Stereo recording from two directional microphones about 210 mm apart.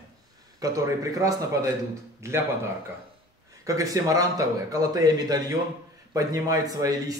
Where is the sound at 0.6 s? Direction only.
15° right (ahead or behind).